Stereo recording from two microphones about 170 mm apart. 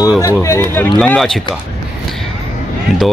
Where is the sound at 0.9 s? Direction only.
Centre (ahead or behind).